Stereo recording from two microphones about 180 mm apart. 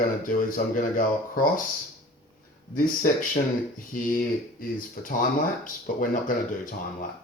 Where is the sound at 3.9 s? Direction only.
50° left (ahead or behind).